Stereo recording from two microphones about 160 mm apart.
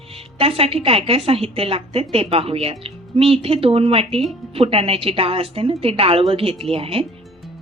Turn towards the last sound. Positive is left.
turn(degrees=-35)  # may be behind; listen again after turning